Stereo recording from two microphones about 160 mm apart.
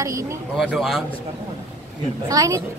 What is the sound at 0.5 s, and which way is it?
Speech, 5° right (ahead or behind).